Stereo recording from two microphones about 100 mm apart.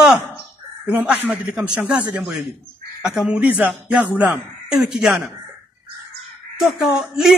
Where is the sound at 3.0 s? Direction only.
10° right (ahead or behind).